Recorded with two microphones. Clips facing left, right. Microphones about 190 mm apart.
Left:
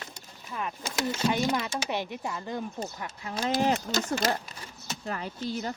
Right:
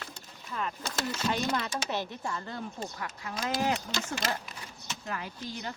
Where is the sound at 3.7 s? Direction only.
45° left (ahead or behind).